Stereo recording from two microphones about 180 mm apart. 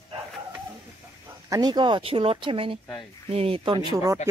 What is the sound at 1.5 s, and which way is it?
Speech, 20° right (ahead or behind).